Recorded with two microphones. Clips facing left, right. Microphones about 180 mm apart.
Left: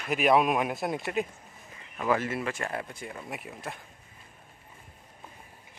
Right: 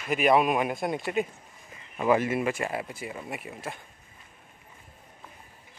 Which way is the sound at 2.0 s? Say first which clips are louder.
Right 4 dB; 15° right (ahead or behind).